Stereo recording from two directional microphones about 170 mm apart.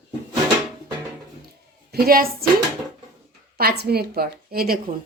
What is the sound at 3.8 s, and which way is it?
A woman's voice, 70° right (ahead or behind).